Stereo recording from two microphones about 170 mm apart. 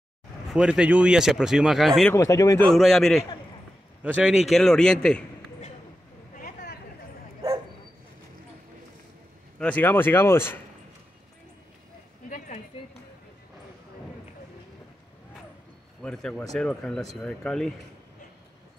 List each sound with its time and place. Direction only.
0.5 s speech: 5° right (ahead or behind)
2.1 s speech: 20° left (ahead or behind)
2.7 s speech: centre (ahead or behind)
6.3 s a sound: 65° left (ahead or behind)
9.6 s speech: 10° left (ahead or behind)
12.3 s a sound: 50° left (ahead or behind)
16.0 s speech: 5° left (ahead or behind)